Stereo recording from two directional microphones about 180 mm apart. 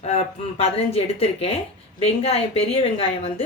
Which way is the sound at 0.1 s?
35° left (ahead or behind).